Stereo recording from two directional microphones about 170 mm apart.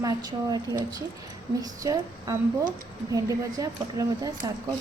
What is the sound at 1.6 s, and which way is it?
A woman's voice, 20° right (ahead or behind).